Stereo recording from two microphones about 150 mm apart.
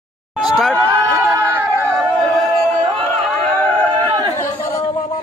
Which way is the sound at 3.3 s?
5° left (ahead or behind).